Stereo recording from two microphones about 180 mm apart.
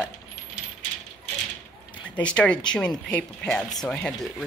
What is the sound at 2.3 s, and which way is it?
Speech, 5° left (ahead or behind).